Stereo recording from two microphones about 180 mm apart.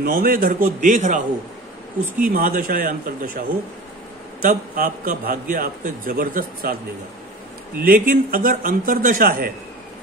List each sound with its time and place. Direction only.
0.0 s a man's voice: 55° right (ahead or behind)
2.2 s a man's voice: 50° right (ahead or behind)
7.8 s a man's voice: 50° right (ahead or behind)